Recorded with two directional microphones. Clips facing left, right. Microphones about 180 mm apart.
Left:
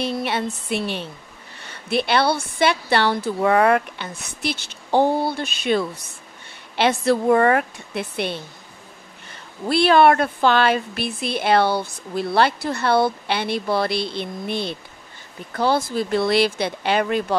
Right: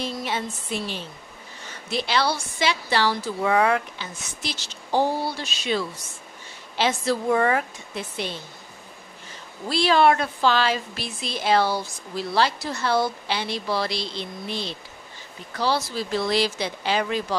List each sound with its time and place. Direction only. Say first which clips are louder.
0.0 s a woman's voice: left 5 dB; 65° left (ahead or behind)